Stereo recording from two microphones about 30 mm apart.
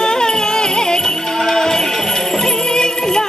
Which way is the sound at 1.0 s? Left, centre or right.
Centre.